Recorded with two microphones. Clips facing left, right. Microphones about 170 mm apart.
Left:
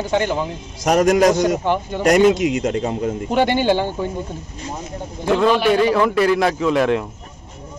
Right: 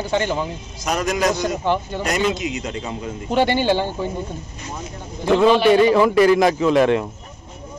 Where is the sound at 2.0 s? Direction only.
50° left (ahead or behind).